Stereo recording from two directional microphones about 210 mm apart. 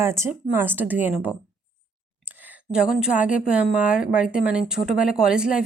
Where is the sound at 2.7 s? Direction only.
5° right (ahead or behind).